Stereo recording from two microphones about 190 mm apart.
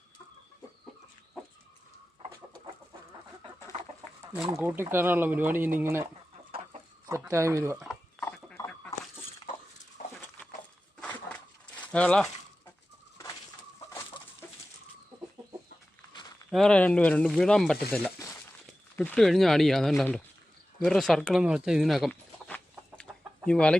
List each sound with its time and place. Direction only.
3.7 s chicken: 35° right (ahead or behind)
4.2 s chicken: 5° right (ahead or behind)
4.4 s speech: 15° right (ahead or behind)
7.1 s speech: 15° right (ahead or behind)
7.8 s livestock: 5° left (ahead or behind)
8.5 s chicken: 10° left (ahead or behind)
10.0 s a sound: 45° left (ahead or behind)
11.8 s a sound: 5° left (ahead or behind)
16.5 s speech: 5° left (ahead or behind)
23.1 s chicken: 10° right (ahead or behind)
23.5 s speech: 5° left (ahead or behind)